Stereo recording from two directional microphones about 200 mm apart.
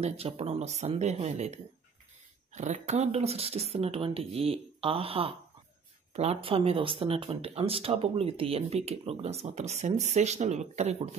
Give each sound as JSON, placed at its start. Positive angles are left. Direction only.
{"t": 0.0, "sound": "speech", "side_deg": -30}